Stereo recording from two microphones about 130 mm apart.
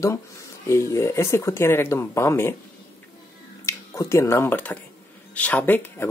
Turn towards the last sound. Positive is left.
turn(degrees=15)  # may be behind; listen again after turning